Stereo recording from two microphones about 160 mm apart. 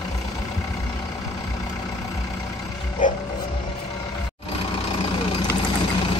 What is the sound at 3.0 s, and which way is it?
Roaring cats, 55° left (ahead or behind).